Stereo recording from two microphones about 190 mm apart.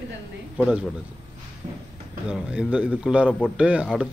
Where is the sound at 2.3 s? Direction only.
5° right (ahead or behind).